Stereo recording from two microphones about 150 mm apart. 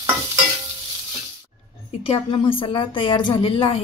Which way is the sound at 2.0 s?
35° left (ahead or behind).